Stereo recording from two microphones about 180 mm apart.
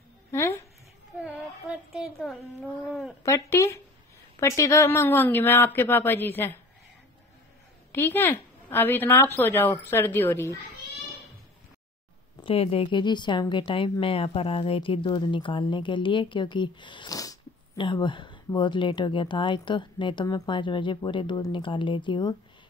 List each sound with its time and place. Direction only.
0.3 s a sound: 15° left (ahead or behind)
2.0 s a child's voice: centre (ahead or behind)
3.3 s a woman's voice: 15° left (ahead or behind)
7.9 s a woman's voice: 10° left (ahead or behind)
12.4 s speech: 30° left (ahead or behind)